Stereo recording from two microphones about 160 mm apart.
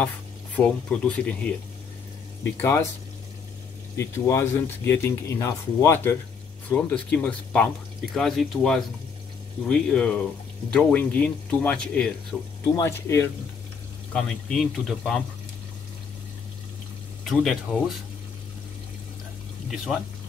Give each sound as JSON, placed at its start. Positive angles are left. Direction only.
{"t": 0.6, "sound": "speech", "side_deg": 5}
{"t": 3.9, "sound": "speech", "side_deg": 15}
{"t": 12.7, "sound": "speech", "side_deg": 15}
{"t": 14.1, "sound": "speech", "side_deg": 5}
{"t": 17.2, "sound": "speech", "side_deg": 0}
{"t": 19.7, "sound": "speech", "side_deg": 0}